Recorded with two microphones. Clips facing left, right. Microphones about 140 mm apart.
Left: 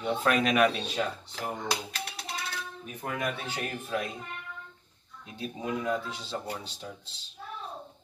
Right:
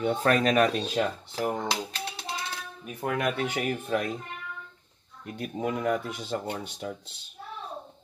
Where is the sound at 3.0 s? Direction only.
75° right (ahead or behind).